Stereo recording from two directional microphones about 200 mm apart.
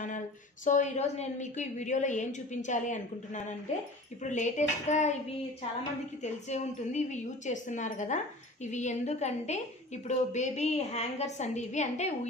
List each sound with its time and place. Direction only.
0.7 s a woman's voice: 35° left (ahead or behind)
6.2 s a woman's voice: 35° left (ahead or behind)